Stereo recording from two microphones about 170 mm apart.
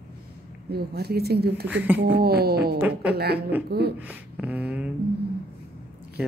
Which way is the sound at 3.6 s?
70° right (ahead or behind).